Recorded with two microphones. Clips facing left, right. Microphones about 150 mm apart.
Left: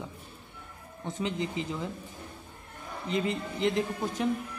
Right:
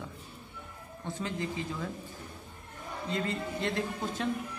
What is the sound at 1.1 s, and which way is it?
Speech, 20° left (ahead or behind).